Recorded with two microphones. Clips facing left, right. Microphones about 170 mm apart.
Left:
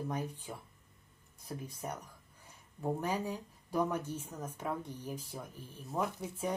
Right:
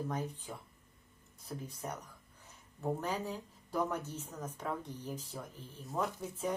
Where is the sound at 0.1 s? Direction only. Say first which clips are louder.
Even; 10° left (ahead or behind).